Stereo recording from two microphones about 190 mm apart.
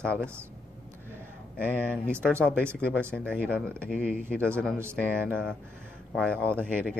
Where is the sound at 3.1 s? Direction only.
5° left (ahead or behind).